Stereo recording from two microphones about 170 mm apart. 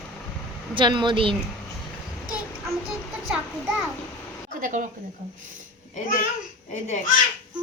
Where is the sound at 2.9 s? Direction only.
Centre (ahead or behind).